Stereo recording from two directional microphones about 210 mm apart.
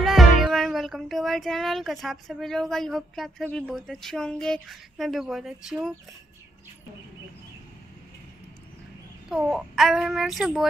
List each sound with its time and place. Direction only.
0.0 s music: centre (ahead or behind)
9.3 s music: 5° right (ahead or behind)